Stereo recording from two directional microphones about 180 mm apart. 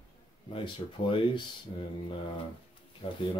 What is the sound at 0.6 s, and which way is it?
Speech, 30° left (ahead or behind).